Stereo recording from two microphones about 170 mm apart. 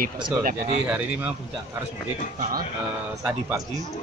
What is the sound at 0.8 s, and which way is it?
Speech, 10° right (ahead or behind).